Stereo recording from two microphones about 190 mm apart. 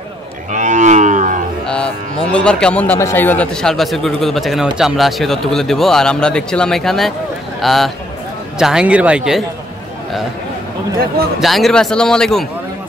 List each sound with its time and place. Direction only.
0.5 s cattle: 40° right (ahead or behind)
2.3 s speech: 5° left (ahead or behind)
11.3 s speech: centre (ahead or behind)